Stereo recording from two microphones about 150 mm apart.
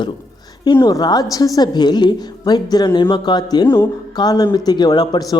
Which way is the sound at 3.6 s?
15° left (ahead or behind).